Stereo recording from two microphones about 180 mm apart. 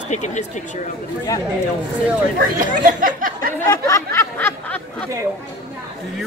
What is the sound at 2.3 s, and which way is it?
Speech, 50° right (ahead or behind).